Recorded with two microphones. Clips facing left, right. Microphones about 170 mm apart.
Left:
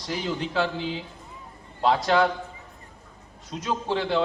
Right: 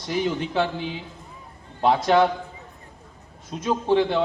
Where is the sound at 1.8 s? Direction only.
20° right (ahead or behind).